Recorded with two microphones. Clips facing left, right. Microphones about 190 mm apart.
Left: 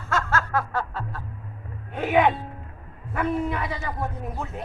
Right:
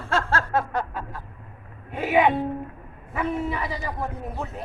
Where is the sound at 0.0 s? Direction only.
30° right (ahead or behind); by 2.3 s 5° right (ahead or behind).